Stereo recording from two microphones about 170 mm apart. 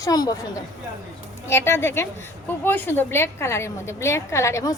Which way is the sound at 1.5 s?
15° left (ahead or behind).